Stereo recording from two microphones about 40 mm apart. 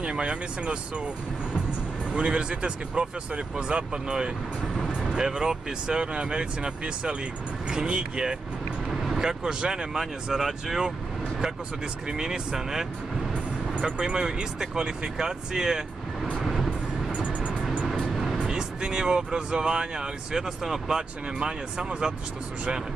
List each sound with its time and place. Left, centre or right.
0.0 s speech: right
2.1 s speech: right
8.9 s speech: centre
9.9 s speech: centre
12.1 s speech: centre
13.3 s music: right
14.2 s speech: centre
16.4 s vehicle: centre
18.1 s vehicle: centre
18.4 s speech: centre